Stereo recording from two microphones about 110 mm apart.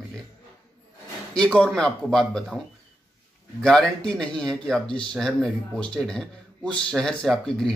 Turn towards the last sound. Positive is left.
turn(degrees=5)  # may be behind; listen again after turning